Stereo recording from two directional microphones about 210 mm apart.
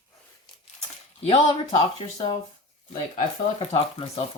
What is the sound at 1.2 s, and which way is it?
Speech, 25° left (ahead or behind).